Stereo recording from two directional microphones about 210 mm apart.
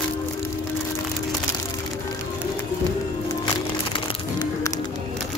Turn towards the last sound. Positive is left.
turn(degrees=20)  # may be behind; listen again after turning